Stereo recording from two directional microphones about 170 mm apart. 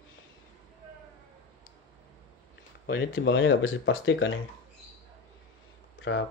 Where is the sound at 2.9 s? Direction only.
90° left.